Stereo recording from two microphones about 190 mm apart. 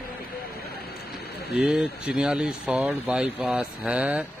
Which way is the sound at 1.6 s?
5° right (ahead or behind).